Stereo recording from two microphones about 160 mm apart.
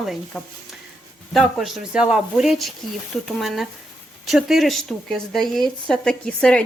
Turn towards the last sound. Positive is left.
turn(degrees=5)  # may be behind; listen again after turning